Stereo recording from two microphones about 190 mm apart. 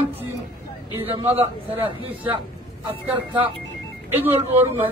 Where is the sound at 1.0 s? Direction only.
30° right (ahead or behind).